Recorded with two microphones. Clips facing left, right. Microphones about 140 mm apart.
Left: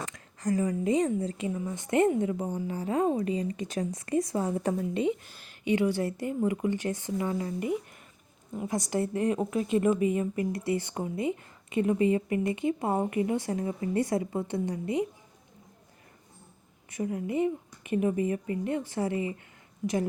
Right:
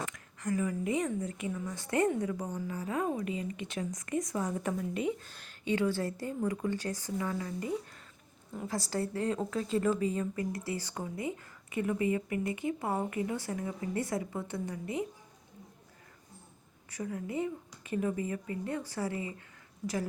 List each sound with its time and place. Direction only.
0.0 s a woman's voice: 35° left (ahead or behind)
5.2 s speech: 10° left (ahead or behind); by 15.0 s 25° left (ahead or behind)
17.0 s speech: 25° left (ahead or behind)